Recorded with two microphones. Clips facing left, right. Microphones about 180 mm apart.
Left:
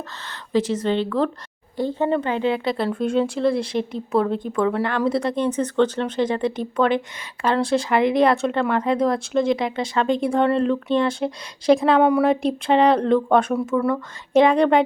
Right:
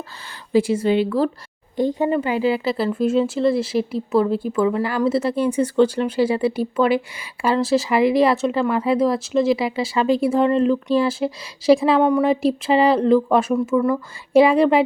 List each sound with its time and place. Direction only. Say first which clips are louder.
0.3 s speech: right 3 dB; 10° right (ahead or behind)